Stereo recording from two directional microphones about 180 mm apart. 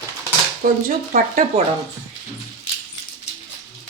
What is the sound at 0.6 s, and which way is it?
Speech, 50° right (ahead or behind).